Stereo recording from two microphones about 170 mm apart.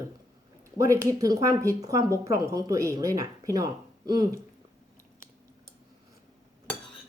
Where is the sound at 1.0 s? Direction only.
20° right (ahead or behind).